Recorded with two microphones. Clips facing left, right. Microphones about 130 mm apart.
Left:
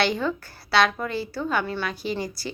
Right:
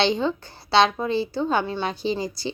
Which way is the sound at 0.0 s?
25° right (ahead or behind).